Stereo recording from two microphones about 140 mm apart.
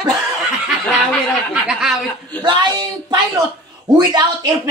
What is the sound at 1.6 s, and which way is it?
Snicker, 5° right (ahead or behind).